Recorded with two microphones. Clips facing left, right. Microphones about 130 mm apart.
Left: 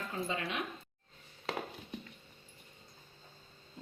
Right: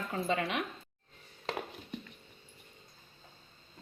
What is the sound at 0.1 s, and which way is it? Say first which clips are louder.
Speech: right 6 dB; 65° right (ahead or behind).